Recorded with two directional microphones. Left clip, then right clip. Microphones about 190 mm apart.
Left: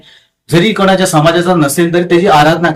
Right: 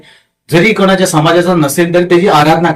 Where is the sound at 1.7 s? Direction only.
20° left (ahead or behind).